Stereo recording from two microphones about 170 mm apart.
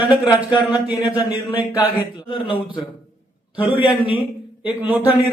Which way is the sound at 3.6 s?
10° right (ahead or behind).